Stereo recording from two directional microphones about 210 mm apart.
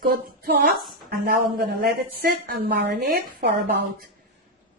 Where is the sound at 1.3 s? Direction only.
40° right (ahead or behind).